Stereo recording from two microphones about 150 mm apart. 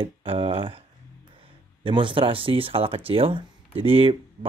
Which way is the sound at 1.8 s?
35° right (ahead or behind).